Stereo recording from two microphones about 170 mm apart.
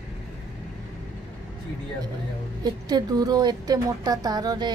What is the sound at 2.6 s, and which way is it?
A woman's voice, 25° right (ahead or behind).